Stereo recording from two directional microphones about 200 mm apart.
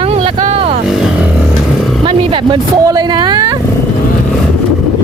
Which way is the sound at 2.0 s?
25° right (ahead or behind).